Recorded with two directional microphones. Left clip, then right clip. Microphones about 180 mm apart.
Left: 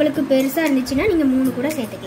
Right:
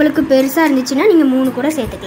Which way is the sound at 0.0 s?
15° right (ahead or behind).